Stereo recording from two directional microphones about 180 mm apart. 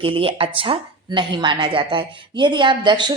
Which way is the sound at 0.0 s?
30° right (ahead or behind).